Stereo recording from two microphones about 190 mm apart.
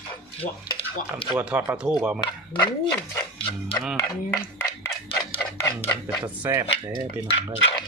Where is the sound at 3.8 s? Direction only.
Centre (ahead or behind).